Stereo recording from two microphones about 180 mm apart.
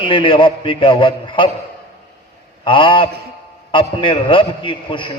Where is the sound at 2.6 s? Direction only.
30° left (ahead or behind).